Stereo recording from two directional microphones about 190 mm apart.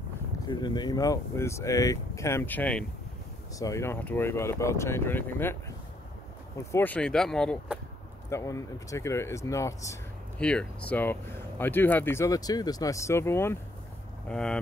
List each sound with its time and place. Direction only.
0.5 s speech: 20° left (ahead or behind); by 7.8 s centre (ahead or behind)
8.3 s speech: 15° left (ahead or behind)
10.4 s speech: 5° left (ahead or behind)